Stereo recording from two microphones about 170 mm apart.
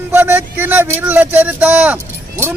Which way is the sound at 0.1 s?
10° right (ahead or behind).